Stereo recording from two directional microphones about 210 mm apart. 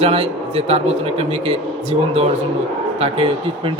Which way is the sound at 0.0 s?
30° right (ahead or behind).